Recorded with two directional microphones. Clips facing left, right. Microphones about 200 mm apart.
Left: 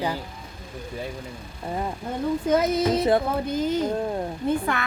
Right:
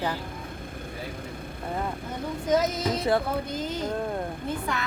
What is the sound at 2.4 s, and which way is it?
A woman's voice, 55° left (ahead or behind).